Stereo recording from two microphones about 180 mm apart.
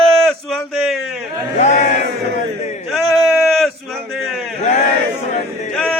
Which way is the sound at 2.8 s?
Centre (ahead or behind).